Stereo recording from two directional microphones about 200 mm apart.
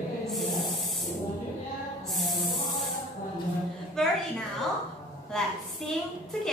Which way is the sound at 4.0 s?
Centre (ahead or behind).